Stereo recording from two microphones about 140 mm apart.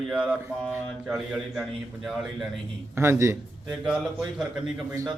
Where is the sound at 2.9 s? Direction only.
20° right (ahead or behind).